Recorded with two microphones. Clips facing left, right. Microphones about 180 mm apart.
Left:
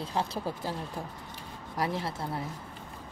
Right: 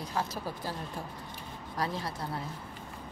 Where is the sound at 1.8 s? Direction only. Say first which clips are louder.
Left 3 dB; 20° left (ahead or behind).